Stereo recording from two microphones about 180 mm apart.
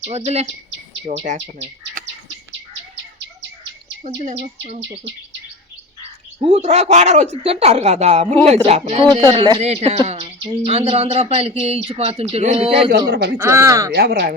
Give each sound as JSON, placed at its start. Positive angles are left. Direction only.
{"t": 0.0, "sound": "speech", "side_deg": -35}
{"t": 1.1, "sound": "speech", "side_deg": -50}
{"t": 4.0, "sound": "speech", "side_deg": -40}
{"t": 6.4, "sound": "speech", "side_deg": -35}
{"t": 12.9, "sound": "speech", "side_deg": -60}
{"t": 13.3, "sound": "speech", "side_deg": -15}
{"t": 13.9, "sound": "speech", "side_deg": -60}